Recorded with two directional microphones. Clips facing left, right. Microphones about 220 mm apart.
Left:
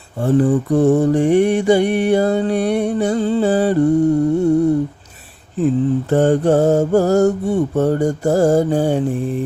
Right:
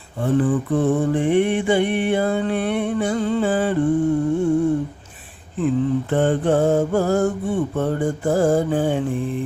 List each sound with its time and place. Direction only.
0.2 s mantra: 40° left (ahead or behind)
5.5 s mantra: 40° left (ahead or behind)